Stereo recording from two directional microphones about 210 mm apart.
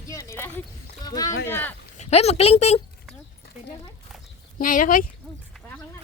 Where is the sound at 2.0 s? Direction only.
30° left (ahead or behind).